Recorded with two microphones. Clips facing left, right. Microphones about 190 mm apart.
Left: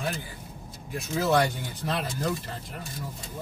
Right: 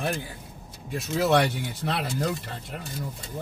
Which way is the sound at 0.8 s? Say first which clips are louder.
Right 2 dB; 70° right (ahead or behind).